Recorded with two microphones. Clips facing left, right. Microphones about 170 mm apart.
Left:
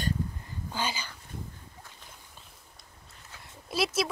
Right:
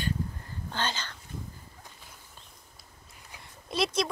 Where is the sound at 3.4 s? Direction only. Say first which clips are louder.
Even; 5° left (ahead or behind).